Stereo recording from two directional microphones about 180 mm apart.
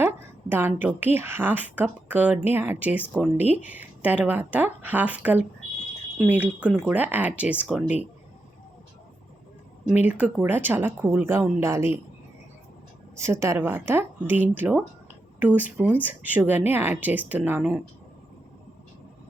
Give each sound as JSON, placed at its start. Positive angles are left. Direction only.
{"t": 0.0, "sound": "a woman's voice", "side_deg": -10}
{"t": 9.9, "sound": "a woman's voice", "side_deg": -10}
{"t": 13.1, "sound": "a woman's voice", "side_deg": -15}